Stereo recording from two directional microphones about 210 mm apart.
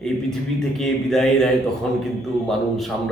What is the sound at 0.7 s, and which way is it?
Speech, centre (ahead or behind).